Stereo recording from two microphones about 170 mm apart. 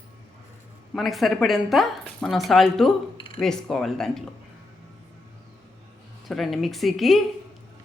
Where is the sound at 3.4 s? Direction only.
5° left (ahead or behind).